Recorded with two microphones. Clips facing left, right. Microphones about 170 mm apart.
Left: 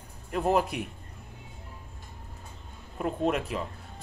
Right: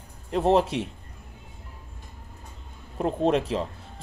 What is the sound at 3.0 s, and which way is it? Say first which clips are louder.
Speech: right 5 dB; 30° right (ahead or behind).